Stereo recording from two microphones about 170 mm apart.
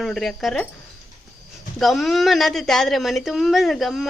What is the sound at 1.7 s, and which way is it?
A woman's voice, centre (ahead or behind).